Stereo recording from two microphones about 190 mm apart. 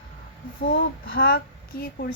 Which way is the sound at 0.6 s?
50° left (ahead or behind).